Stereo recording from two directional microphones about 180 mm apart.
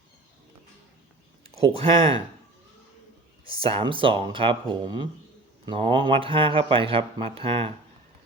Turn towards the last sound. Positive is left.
turn(degrees=-30)  # may be behind; listen again after turning